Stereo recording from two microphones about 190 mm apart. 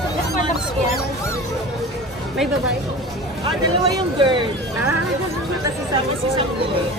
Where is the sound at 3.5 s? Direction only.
25° right (ahead or behind).